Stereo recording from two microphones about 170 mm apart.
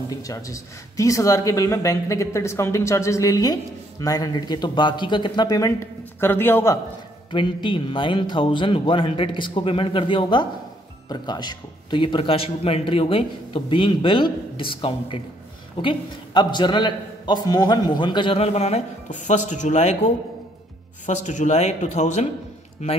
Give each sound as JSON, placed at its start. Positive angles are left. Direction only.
{"t": 0.1, "sound": "a man's voice", "side_deg": 20}
{"t": 7.2, "sound": "a man's voice", "side_deg": 30}